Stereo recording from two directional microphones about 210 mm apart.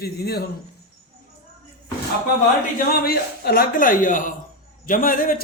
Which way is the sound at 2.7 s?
45° left (ahead or behind).